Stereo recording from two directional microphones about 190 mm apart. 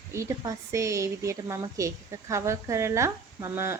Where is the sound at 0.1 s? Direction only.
15° right (ahead or behind).